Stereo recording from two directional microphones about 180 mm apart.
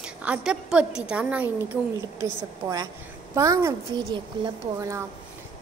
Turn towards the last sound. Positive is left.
turn(degrees=-20)  # may be behind; listen again after turning